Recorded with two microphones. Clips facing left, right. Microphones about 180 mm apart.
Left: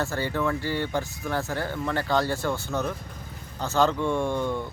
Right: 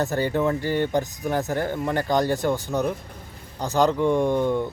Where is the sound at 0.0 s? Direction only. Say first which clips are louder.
Right 4 dB; 20° right (ahead or behind).